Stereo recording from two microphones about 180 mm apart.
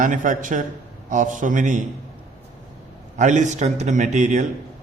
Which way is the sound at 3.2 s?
40° right (ahead or behind).